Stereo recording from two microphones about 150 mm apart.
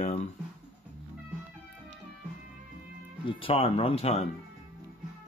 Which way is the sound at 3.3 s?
35° left (ahead or behind).